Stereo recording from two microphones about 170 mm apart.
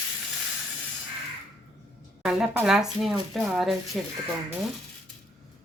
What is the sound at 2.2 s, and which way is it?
Speech, 5° right (ahead or behind).